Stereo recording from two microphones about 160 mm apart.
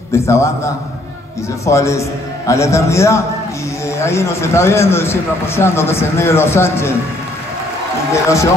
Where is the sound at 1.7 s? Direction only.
20° left (ahead or behind).